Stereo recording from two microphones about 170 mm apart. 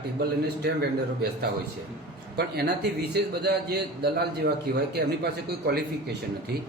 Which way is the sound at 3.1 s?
75° right (ahead or behind).